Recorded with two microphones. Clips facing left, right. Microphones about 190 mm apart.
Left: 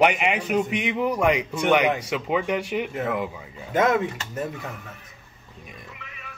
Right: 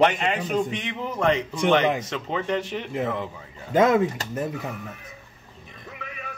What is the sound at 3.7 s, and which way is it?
Speech, 30° right (ahead or behind).